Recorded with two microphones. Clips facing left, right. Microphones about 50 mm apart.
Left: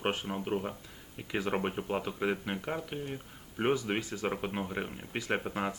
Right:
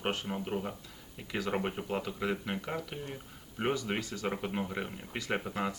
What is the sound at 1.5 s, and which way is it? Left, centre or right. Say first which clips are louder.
Speech: even; centre.